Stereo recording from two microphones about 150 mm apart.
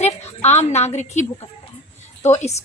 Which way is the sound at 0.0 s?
45° left (ahead or behind).